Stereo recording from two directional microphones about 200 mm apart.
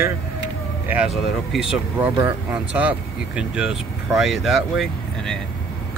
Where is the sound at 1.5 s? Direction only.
5° right (ahead or behind).